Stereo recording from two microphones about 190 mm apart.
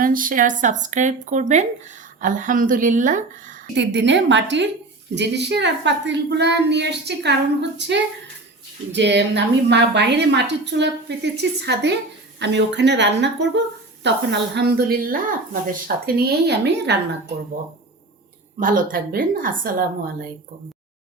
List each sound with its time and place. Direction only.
0.0 s a woman's voice: 45° right (ahead or behind)
3.8 s a woman's voice: 70° right (ahead or behind)
18.6 s a woman's voice: 50° right (ahead or behind)